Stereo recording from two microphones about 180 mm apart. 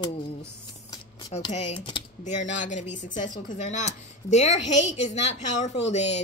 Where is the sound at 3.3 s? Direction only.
45° left (ahead or behind).